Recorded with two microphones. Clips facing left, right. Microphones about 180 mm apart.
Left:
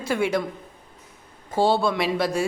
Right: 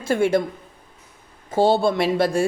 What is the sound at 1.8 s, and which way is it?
Speech, 50° right (ahead or behind).